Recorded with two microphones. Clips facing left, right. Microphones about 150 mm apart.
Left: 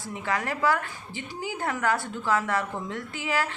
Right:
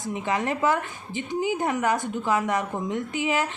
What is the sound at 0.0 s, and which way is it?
A woman's voice, 20° right (ahead or behind).